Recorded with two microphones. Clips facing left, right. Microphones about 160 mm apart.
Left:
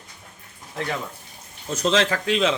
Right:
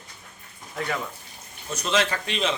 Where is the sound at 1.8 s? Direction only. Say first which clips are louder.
Left 4 dB; 90° left.